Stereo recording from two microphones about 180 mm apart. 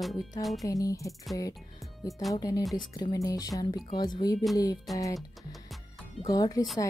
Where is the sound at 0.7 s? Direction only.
20° left (ahead or behind).